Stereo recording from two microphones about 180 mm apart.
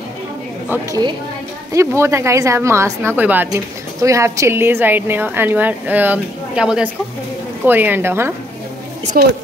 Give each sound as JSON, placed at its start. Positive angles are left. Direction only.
{"t": 1.7, "sound": "a woman's voice", "side_deg": -15}
{"t": 9.1, "sound": "a woman's voice", "side_deg": -55}